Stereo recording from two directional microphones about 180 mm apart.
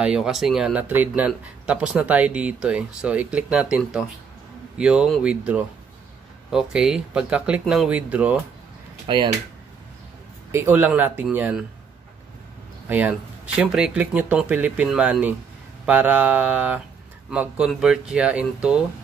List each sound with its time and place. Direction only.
0.0 s speech: 5° right (ahead or behind)
9.0 s speech: 25° right (ahead or behind)
10.5 s speech: 10° right (ahead or behind)
12.8 s speech: 10° right (ahead or behind)